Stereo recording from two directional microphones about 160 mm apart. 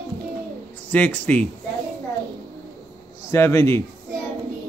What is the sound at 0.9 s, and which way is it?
Speech, 10° left (ahead or behind).